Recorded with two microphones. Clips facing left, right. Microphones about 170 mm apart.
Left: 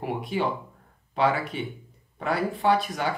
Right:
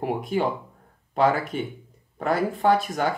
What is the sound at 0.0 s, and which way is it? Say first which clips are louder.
Speech: right 3 dB; 45° right (ahead or behind).